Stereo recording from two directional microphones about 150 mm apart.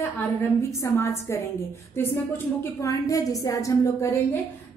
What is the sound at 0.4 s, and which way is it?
A woman's voice, 15° left (ahead or behind).